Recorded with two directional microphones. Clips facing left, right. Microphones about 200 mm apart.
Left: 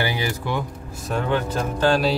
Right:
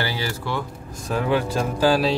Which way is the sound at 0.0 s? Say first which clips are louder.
Left 2 dB; 15° left (ahead or behind).